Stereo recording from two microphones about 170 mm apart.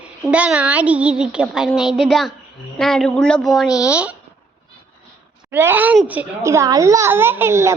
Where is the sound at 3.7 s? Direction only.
20° left (ahead or behind).